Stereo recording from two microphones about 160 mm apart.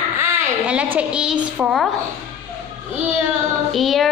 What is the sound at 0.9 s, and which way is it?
Speech, 5° right (ahead or behind).